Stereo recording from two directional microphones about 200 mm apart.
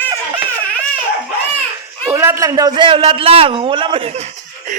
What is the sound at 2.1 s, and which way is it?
A man's voice, 15° right (ahead or behind).